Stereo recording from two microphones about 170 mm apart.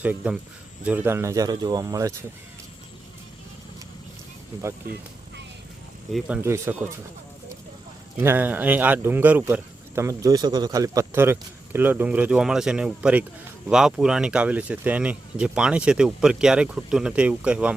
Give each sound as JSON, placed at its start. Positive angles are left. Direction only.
{"t": 0.0, "sound": "speech", "side_deg": -10}
{"t": 6.1, "sound": "speech", "side_deg": -5}
{"t": 8.2, "sound": "speech", "side_deg": -10}